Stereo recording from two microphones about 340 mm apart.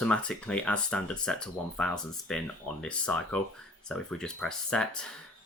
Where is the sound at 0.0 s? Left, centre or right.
Centre.